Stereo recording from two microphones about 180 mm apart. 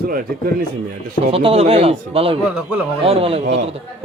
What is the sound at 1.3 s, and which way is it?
Speech, 30° right (ahead or behind).